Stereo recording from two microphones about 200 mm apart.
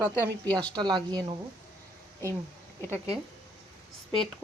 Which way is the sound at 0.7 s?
20° right (ahead or behind).